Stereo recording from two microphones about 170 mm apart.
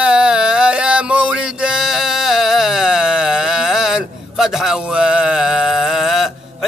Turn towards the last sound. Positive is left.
turn(degrees=0)  # may be behind; listen again after turning